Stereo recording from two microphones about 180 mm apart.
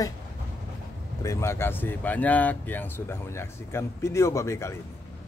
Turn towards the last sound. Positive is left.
turn(degrees=15)  # may be behind; listen again after turning